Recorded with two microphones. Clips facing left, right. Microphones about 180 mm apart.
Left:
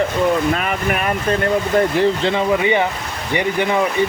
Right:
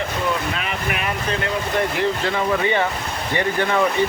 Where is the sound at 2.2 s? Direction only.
20° left (ahead or behind).